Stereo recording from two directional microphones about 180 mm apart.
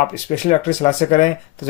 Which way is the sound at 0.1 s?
40° left (ahead or behind).